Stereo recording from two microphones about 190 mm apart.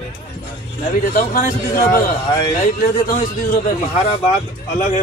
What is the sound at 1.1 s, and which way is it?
Speech, 45° left (ahead or behind).